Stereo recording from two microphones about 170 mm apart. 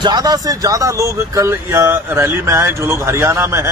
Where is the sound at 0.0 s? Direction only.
25° right (ahead or behind).